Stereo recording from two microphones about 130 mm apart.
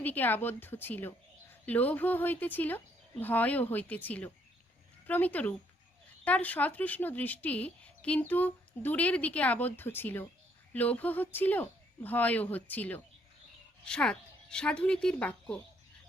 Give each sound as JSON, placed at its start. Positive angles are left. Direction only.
{"t": 0.0, "sound": "speech", "side_deg": 15}